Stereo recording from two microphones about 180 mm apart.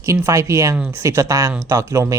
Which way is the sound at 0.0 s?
15° right (ahead or behind).